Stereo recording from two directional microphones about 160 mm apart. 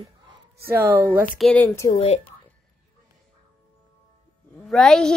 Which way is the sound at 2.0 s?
40° left (ahead or behind).